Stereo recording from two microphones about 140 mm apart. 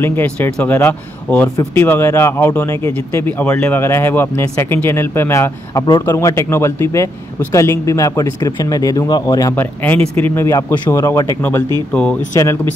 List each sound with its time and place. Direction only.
0.0 s speech: 15° left (ahead or behind)